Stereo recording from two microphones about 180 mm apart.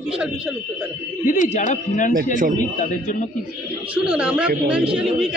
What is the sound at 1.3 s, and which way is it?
Speech, 45° left (ahead or behind).